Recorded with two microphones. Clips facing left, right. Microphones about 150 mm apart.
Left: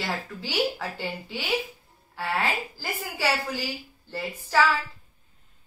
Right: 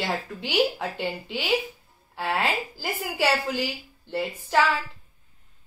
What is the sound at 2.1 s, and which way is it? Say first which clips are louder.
A woman's voice: right 2 dB; 20° right (ahead or behind).